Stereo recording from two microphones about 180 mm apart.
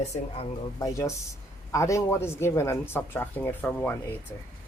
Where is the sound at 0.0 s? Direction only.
35° left (ahead or behind).